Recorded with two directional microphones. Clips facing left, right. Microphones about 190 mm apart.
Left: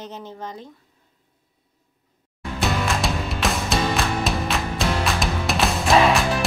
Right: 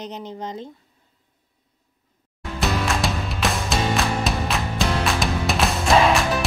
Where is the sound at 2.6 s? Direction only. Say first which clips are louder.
Even; centre (ahead or behind).